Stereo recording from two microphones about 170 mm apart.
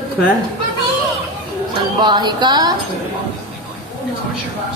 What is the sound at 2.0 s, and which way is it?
Music, 25° right (ahead or behind).